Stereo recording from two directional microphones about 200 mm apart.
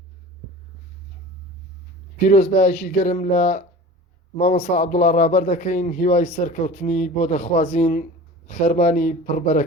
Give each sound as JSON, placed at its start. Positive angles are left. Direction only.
{"t": 2.2, "sound": "speech", "side_deg": 35}